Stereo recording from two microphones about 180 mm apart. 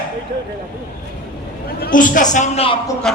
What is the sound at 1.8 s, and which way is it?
Speech, 50° left (ahead or behind).